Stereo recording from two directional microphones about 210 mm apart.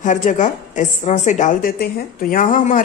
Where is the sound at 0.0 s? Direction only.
35° left (ahead or behind).